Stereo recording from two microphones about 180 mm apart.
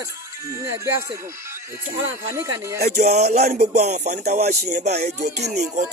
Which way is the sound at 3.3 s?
40° right (ahead or behind).